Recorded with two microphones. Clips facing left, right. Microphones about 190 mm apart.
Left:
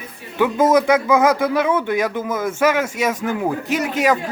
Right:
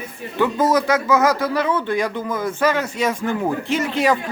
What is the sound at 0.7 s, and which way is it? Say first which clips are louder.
Speech: left 3 dB; 10° left (ahead or behind).